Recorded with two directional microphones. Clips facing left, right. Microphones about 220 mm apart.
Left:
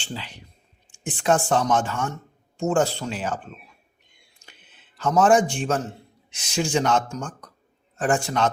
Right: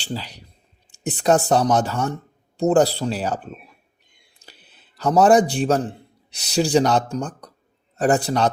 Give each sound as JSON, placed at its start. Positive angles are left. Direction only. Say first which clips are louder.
{"t": 0.0, "sound": "speech", "louder": "right 5 dB", "side_deg": -40}
{"t": 4.4, "sound": "a sound", "louder": "right 4 dB", "side_deg": -35}
{"t": 6.3, "sound": "speech", "louder": "right 6 dB", "side_deg": -35}